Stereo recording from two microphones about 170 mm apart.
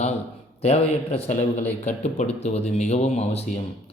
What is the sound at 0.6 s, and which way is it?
A man's voice, 35° left (ahead or behind).